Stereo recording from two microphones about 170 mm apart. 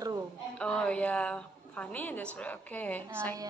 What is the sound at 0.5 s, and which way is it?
A woman's voice, 5° left (ahead or behind).